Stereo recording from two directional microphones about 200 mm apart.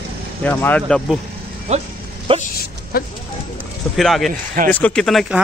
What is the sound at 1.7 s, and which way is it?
Speech, 30° right (ahead or behind).